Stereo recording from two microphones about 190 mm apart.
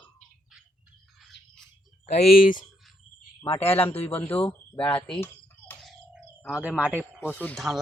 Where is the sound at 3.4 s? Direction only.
30° left (ahead or behind).